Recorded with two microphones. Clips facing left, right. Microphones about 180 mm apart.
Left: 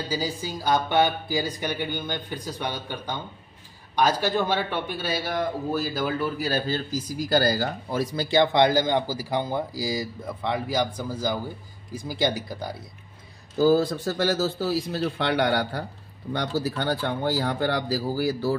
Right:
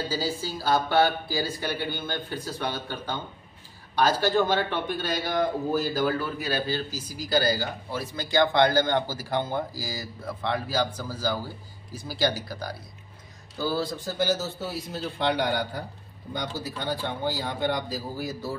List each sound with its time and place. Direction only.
0.1 s speech: 15° left (ahead or behind)
6.1 s a man's voice: 40° left (ahead or behind)
8.3 s speech: 25° left (ahead or behind)
8.6 s speech: 15° left (ahead or behind)
13.6 s speech: 45° left (ahead or behind)
13.9 s speech: 75° left (ahead or behind)